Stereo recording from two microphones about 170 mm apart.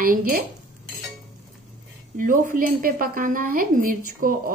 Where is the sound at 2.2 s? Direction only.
55° right (ahead or behind).